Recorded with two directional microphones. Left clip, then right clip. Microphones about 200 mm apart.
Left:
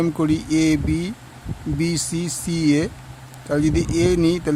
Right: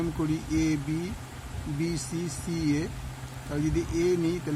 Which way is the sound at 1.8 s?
55° left (ahead or behind).